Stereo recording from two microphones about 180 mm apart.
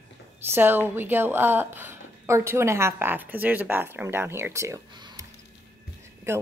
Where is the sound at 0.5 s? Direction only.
10° right (ahead or behind).